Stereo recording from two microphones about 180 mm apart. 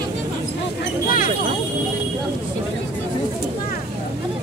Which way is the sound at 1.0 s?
50° left (ahead or behind).